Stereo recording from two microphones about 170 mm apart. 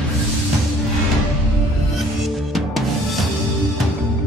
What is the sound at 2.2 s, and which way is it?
Music, centre (ahead or behind).